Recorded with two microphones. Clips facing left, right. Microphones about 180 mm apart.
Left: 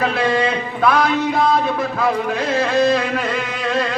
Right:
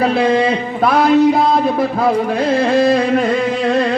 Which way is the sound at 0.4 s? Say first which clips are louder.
Right 3 dB; 25° right (ahead or behind).